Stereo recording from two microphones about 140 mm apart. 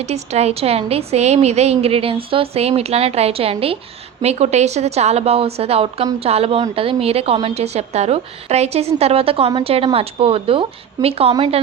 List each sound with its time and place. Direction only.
0.0 s a woman's voice: 50° right (ahead or behind)